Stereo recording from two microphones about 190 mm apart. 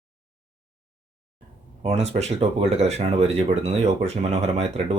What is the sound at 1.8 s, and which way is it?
Speech, 35° right (ahead or behind).